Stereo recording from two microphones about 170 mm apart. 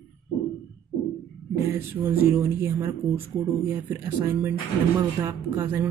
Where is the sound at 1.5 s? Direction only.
15° right (ahead or behind).